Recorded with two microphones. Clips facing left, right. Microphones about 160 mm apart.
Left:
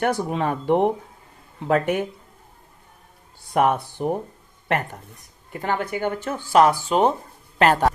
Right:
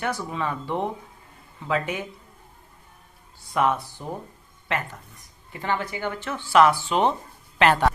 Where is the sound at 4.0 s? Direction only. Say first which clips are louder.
Left 10 dB; 65° left (ahead or behind).